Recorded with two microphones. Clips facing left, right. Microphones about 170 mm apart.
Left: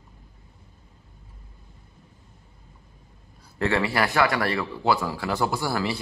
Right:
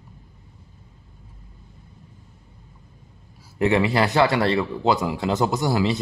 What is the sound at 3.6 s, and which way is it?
Speech, 20° right (ahead or behind).